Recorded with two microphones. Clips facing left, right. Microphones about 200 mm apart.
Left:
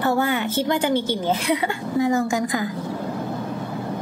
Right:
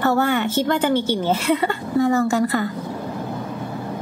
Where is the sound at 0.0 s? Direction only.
10° left (ahead or behind).